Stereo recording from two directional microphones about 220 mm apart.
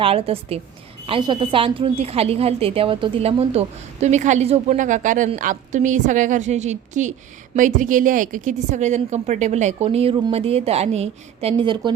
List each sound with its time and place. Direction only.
0.0 s a woman's voice: 25° right (ahead or behind)